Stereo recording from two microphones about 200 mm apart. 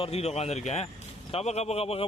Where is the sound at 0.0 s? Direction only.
30° left (ahead or behind).